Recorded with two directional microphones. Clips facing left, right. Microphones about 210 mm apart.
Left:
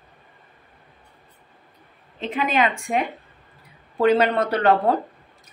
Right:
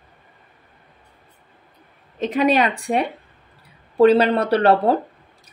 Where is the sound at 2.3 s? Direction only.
40° right (ahead or behind).